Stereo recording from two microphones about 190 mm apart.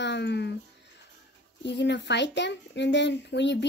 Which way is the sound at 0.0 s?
65° left (ahead or behind).